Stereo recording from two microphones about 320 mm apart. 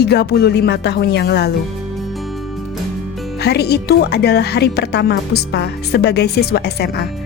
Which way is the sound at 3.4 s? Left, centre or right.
Left.